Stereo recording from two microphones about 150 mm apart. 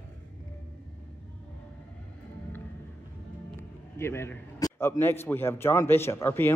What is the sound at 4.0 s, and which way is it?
A man's voice, 15° left (ahead or behind).